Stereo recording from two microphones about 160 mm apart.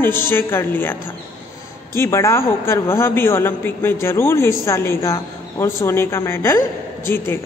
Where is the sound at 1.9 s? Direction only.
15° left (ahead or behind).